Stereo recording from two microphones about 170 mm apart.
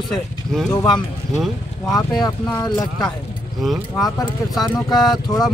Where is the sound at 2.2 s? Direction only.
25° left (ahead or behind).